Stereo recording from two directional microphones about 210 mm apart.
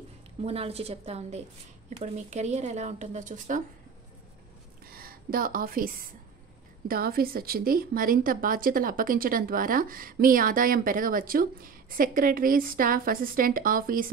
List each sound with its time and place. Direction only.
0.4 s a woman's voice: 30° right (ahead or behind)
4.8 s speech: 45° right (ahead or behind)